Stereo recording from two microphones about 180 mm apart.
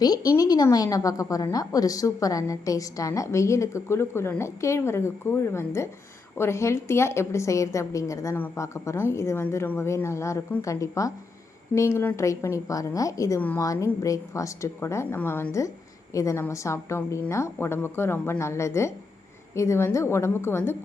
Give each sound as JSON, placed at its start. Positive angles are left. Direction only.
{"t": 0.0, "sound": "a woman's voice", "side_deg": 20}